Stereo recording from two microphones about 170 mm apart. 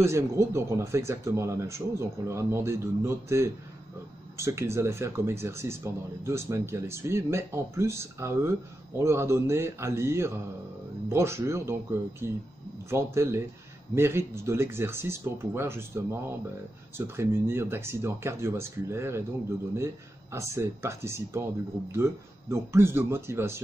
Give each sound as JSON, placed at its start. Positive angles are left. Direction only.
{"t": 0.0, "sound": "speech", "side_deg": -15}